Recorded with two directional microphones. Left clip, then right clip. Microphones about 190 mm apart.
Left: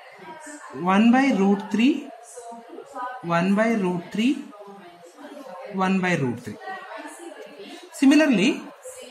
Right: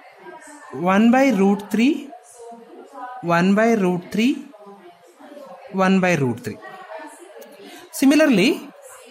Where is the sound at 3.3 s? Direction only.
55° right (ahead or behind).